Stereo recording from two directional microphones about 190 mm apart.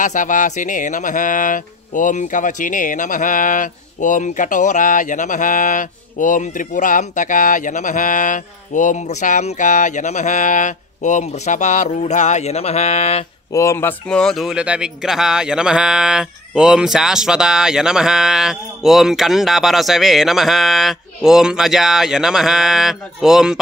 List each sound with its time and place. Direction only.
0.0 s speech: 40° left (ahead or behind)
13.5 s speech: 15° left (ahead or behind); by 23.6 s 5° right (ahead or behind)